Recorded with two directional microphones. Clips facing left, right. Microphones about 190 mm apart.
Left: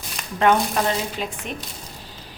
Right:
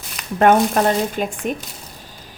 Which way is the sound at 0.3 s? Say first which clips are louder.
Right 5 dB; 50° right (ahead or behind).